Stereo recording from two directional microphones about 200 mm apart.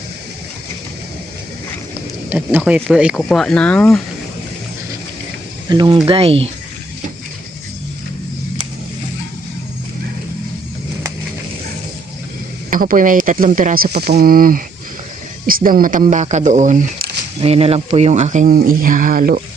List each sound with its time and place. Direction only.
2.3 s speech: 10° right (ahead or behind)
5.6 s speech: 20° right (ahead or behind)
12.7 s speech: 45° right (ahead or behind)
17.4 s speech: 30° right (ahead or behind); by 19.4 s 45° right (ahead or behind)